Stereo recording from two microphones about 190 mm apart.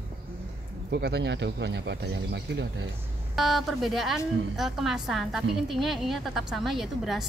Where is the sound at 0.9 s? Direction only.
60° right (ahead or behind).